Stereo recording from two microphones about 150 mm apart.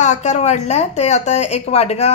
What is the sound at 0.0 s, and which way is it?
A woman's voice, 50° left (ahead or behind).